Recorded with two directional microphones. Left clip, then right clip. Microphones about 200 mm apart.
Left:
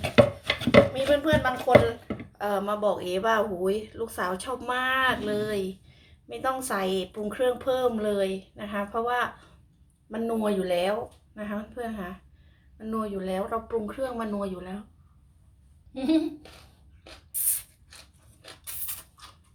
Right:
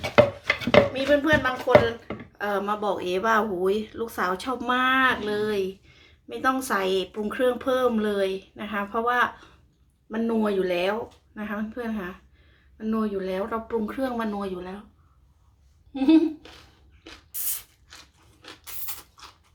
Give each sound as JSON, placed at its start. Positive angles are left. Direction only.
{"t": 0.9, "sound": "a sound", "side_deg": -15}
{"t": 2.4, "sound": "speech", "side_deg": -20}
{"t": 16.0, "sound": "speech", "side_deg": -20}